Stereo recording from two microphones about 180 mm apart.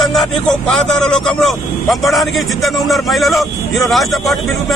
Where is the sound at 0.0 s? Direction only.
Centre (ahead or behind).